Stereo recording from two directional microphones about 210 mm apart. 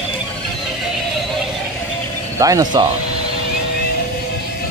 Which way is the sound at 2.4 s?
15° right (ahead or behind).